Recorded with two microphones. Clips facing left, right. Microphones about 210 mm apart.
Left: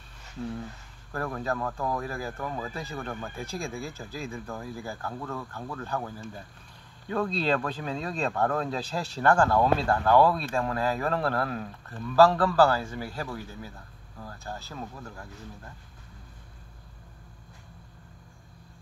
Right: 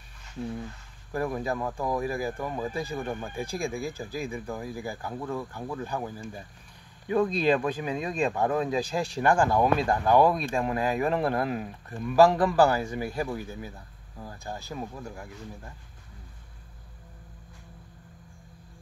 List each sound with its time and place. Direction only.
1.1 s speech: 15° right (ahead or behind)